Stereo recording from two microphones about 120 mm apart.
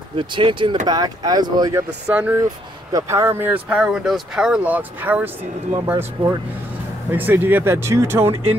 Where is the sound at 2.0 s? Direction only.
10° right (ahead or behind).